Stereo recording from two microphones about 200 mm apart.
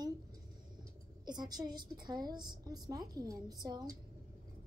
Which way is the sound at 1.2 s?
20° right (ahead or behind).